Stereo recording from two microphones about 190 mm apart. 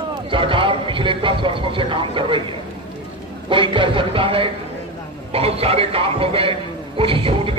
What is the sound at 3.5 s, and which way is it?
Speech, 25° right (ahead or behind).